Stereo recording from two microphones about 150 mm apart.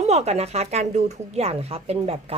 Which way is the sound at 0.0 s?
45° right (ahead or behind).